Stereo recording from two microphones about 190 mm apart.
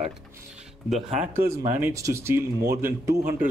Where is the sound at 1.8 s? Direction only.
15° right (ahead or behind).